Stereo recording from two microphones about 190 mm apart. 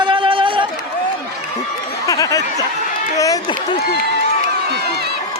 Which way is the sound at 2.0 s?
15° left (ahead or behind).